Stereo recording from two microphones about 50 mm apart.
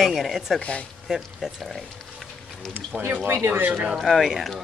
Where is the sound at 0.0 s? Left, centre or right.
Centre.